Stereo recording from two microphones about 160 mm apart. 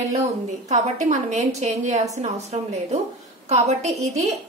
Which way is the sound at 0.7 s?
50° right (ahead or behind).